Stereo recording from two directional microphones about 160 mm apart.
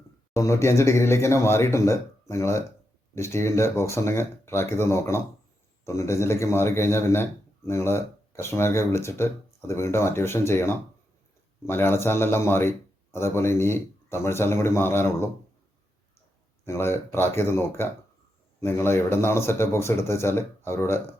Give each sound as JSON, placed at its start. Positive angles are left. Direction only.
{"t": 0.3, "sound": "a man's voice", "side_deg": 20}
{"t": 16.6, "sound": "a man's voice", "side_deg": 15}